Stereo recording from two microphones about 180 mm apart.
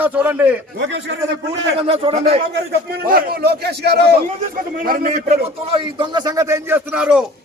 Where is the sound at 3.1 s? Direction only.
55° right (ahead or behind).